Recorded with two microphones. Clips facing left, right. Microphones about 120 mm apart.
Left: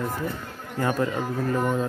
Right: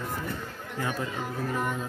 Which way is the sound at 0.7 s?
50° left (ahead or behind).